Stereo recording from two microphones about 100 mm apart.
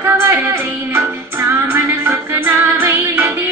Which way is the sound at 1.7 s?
20° right (ahead or behind).